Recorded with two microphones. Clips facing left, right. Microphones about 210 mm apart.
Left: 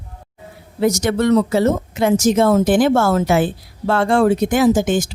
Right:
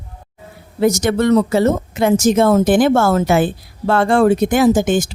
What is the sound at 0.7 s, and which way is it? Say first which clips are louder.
Speech: right 2 dB; 50° right (ahead or behind).